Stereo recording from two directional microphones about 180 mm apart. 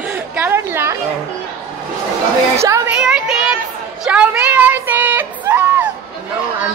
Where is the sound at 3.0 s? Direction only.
5° right (ahead or behind).